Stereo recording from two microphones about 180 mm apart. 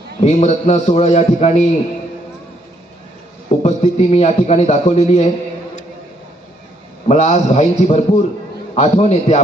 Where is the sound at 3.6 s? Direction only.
35° left (ahead or behind).